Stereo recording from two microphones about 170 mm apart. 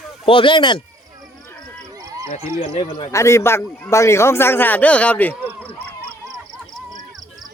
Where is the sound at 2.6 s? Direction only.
35° left (ahead or behind); by 5.3 s 10° left (ahead or behind).